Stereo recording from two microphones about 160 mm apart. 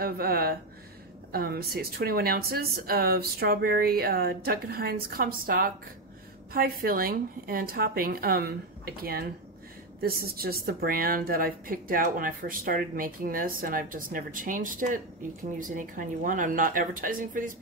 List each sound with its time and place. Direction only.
0.0 s a woman's voice: 70° right (ahead or behind)